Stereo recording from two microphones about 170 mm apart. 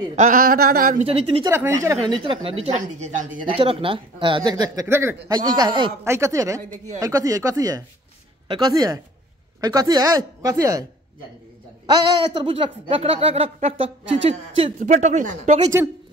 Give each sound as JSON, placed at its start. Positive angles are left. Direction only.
{"t": 0.1, "sound": "speech", "side_deg": -50}
{"t": 1.0, "sound": "speech", "side_deg": -35}
{"t": 1.5, "sound": "speech", "side_deg": -15}
{"t": 3.4, "sound": "a man's voice", "side_deg": -30}
{"t": 15.6, "sound": "speech", "side_deg": -15}